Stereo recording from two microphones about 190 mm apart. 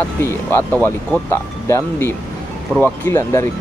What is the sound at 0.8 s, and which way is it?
Speech, 10° left (ahead or behind).